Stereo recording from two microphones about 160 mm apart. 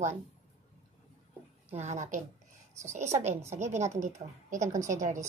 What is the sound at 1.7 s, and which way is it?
A woman's voice, 45° right (ahead or behind).